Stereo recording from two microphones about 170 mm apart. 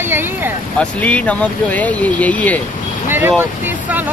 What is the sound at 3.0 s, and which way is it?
Speech, 15° right (ahead or behind).